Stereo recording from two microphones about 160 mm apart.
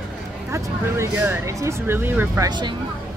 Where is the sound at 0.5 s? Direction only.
15° right (ahead or behind).